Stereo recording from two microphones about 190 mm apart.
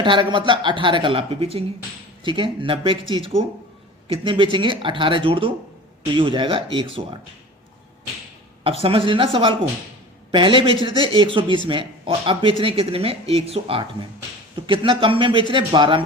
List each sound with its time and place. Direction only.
0.0 s speech: 25° right (ahead or behind)
8.8 s speech: 30° right (ahead or behind)